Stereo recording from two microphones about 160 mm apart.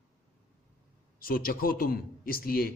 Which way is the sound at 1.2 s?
65° left (ahead or behind).